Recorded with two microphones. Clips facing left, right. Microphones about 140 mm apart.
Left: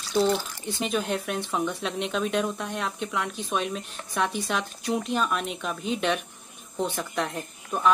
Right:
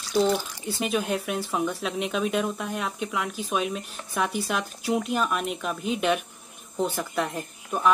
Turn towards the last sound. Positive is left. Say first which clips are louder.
# right 1 dB
turn(degrees=-5)  # may be behind; listen again after turning